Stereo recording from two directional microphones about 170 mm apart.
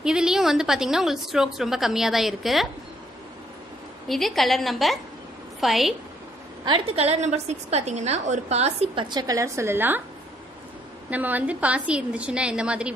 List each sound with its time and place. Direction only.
0.0 s a woman's voice: 5° right (ahead or behind)
4.1 s a woman's voice: centre (ahead or behind)
6.6 s a woman's voice: 30° right (ahead or behind)
9.1 s a woman's voice: 20° right (ahead or behind)
11.1 s a woman's voice: 10° right (ahead or behind)